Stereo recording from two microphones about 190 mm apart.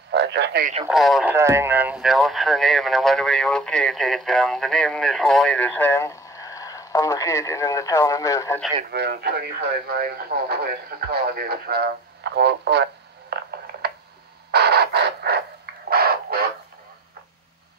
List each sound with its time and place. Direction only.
0.1 s speech: 65° right (ahead or behind)
0.8 s speech: centre (ahead or behind)
1.3 s speech: 15° right (ahead or behind); by 8.5 s 15° left (ahead or behind)
8.9 s speech: 60° right (ahead or behind)
14.5 s a sound: 60° right (ahead or behind)